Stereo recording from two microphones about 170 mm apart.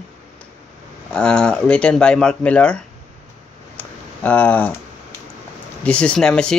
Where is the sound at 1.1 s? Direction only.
5° left (ahead or behind).